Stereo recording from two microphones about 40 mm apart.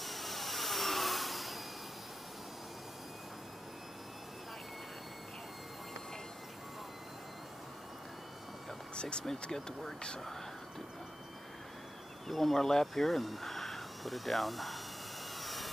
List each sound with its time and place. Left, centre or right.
0.0 s jet engine: centre
8.9 s speech: left
12.3 s speech: centre
15.4 s jet engine: centre